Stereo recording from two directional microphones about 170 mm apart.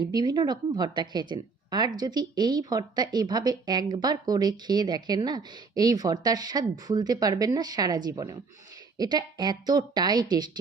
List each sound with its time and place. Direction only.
0.0 s speech: 25° right (ahead or behind)